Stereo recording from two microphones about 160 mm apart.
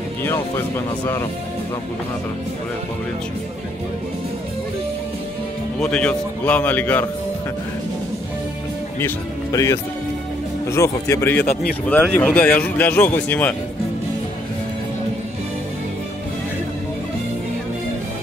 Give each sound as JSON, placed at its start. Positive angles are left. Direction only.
{"t": 0.2, "sound": "speech", "side_deg": 15}
{"t": 5.8, "sound": "speech", "side_deg": 5}
{"t": 9.0, "sound": "speech", "side_deg": 20}
{"t": 11.3, "sound": "speech", "side_deg": 70}
{"t": 11.9, "sound": "speech", "side_deg": 10}